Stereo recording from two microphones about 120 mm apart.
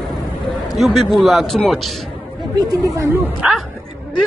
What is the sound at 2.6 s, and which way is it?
Speech, 30° right (ahead or behind).